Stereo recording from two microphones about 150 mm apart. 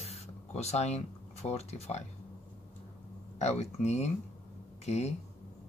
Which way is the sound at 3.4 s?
45° left (ahead or behind).